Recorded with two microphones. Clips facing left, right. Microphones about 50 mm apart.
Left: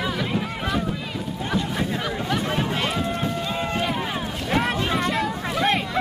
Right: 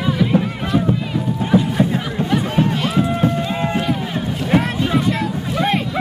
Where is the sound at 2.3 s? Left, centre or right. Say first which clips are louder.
Right 7 dB; centre.